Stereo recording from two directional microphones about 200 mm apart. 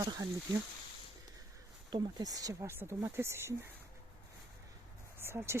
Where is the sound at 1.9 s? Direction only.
20° right (ahead or behind).